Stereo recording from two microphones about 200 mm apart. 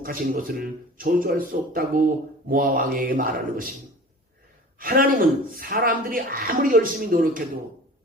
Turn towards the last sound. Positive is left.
turn(degrees=-45)  # may be behind; listen again after turning